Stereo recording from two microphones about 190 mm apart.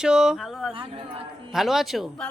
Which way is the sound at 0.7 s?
25° right (ahead or behind).